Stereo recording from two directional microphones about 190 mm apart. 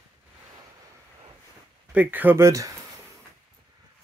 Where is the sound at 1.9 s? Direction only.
10° right (ahead or behind).